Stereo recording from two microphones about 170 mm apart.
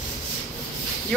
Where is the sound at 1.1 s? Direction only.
Centre (ahead or behind).